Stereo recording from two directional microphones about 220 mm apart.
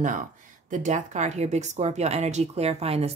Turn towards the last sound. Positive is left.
turn(degrees=-30)  # may be behind; listen again after turning